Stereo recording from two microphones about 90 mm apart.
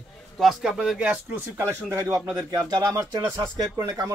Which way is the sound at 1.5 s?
35° right (ahead or behind).